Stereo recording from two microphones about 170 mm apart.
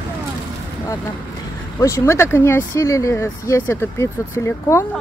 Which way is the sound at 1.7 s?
15° left (ahead or behind).